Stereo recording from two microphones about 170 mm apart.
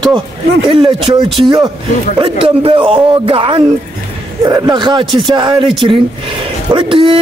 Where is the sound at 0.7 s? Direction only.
30° right (ahead or behind).